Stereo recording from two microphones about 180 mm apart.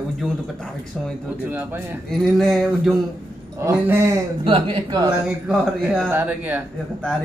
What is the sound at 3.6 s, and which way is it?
Speech, 15° right (ahead or behind).